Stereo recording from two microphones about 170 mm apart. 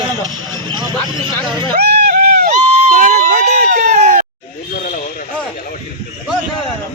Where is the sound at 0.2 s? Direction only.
25° right (ahead or behind).